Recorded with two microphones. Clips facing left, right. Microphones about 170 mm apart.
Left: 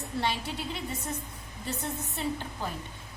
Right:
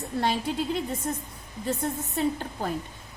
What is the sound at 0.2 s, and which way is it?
A woman's voice, 50° right (ahead or behind).